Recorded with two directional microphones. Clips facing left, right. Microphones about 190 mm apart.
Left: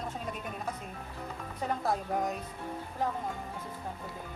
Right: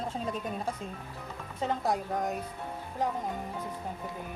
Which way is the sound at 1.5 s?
20° right (ahead or behind).